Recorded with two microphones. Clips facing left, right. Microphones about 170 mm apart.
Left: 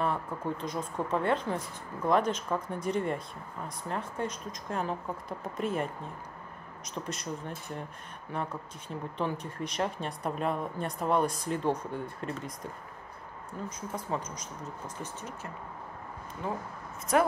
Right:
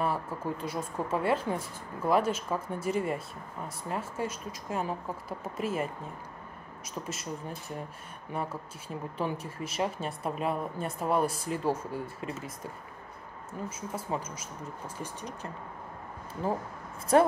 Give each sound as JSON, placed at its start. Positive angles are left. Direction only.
{"t": 0.0, "sound": "speech", "side_deg": -5}
{"t": 6.9, "sound": "speech", "side_deg": -5}
{"t": 13.5, "sound": "speech", "side_deg": -5}
{"t": 16.4, "sound": "speech", "side_deg": -35}